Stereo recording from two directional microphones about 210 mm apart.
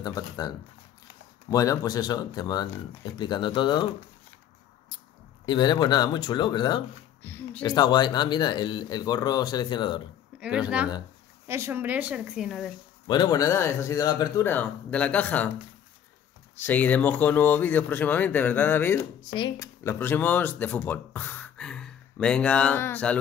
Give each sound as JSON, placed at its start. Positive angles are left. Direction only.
{"t": 0.0, "sound": "speech", "side_deg": 15}
{"t": 1.5, "sound": "speech", "side_deg": 15}
{"t": 5.4, "sound": "speech", "side_deg": 20}
{"t": 7.2, "sound": "speech", "side_deg": 10}
{"t": 7.6, "sound": "speech", "side_deg": 20}
{"t": 11.4, "sound": "a woman's voice", "side_deg": -10}
{"t": 13.0, "sound": "speech", "side_deg": 20}
{"t": 16.5, "sound": "speech", "side_deg": 10}